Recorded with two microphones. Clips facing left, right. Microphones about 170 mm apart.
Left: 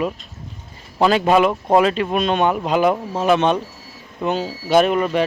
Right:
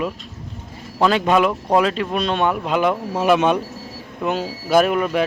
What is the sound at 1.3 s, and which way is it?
Speech, 5° left (ahead or behind).